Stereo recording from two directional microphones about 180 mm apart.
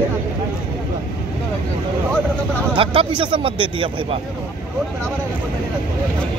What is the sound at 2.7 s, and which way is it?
Speech, 30° right (ahead or behind).